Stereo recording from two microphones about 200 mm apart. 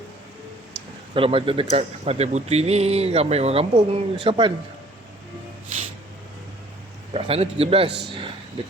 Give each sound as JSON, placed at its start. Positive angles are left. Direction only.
{"t": 1.1, "sound": "a man's voice", "side_deg": -25}
{"t": 7.1, "sound": "a man's voice", "side_deg": -30}
{"t": 7.9, "sound": "a man's voice", "side_deg": -55}